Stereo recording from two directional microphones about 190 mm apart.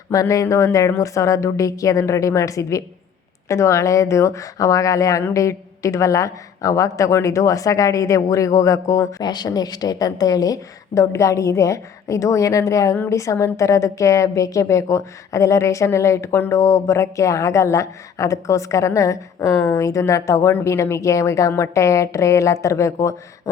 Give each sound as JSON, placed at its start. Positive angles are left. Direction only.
{"t": 0.1, "sound": "speech", "side_deg": 15}